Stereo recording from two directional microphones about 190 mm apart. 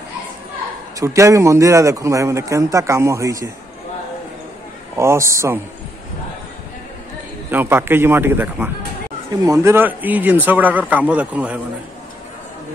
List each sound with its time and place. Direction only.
0.9 s a man's voice: 15° right (ahead or behind)
4.9 s a man's voice: 15° right (ahead or behind)
7.5 s a man's voice: 10° right (ahead or behind)